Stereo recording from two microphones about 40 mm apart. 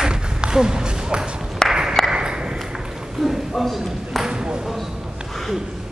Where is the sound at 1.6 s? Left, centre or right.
Centre.